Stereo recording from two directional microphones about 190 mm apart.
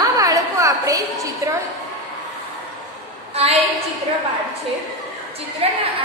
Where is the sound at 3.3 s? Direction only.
35° right (ahead or behind).